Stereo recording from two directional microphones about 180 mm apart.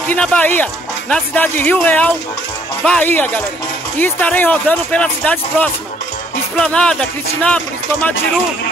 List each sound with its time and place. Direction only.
0.1 s speech: 10° left (ahead or behind)